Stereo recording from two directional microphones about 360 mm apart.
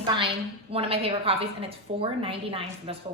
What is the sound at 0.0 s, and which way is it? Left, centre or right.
A woman's voice, centre.